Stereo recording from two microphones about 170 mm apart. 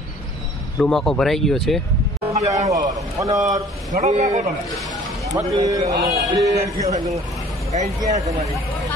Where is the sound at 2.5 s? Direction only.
20° right (ahead or behind).